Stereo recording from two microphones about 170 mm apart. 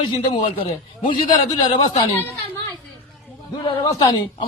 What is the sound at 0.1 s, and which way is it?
Speech, 30° left (ahead or behind).